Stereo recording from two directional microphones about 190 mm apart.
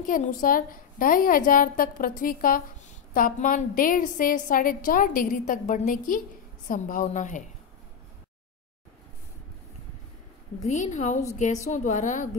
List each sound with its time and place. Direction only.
0.0 s a woman's voice: 45° left (ahead or behind)
10.6 s a woman's voice: 40° left (ahead or behind)